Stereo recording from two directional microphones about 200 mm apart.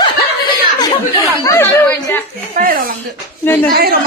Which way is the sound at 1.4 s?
10° left (ahead or behind).